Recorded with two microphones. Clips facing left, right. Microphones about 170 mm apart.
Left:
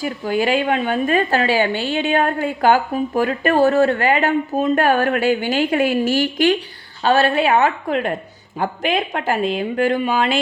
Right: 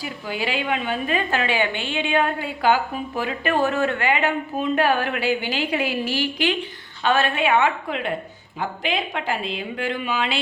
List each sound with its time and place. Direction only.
0.0 s a woman's voice: 45° left (ahead or behind)